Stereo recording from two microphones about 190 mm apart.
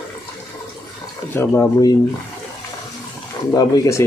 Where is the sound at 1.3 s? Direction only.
10° left (ahead or behind).